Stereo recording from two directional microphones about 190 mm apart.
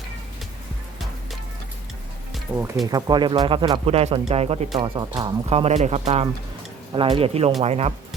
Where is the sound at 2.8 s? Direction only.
20° right (ahead or behind).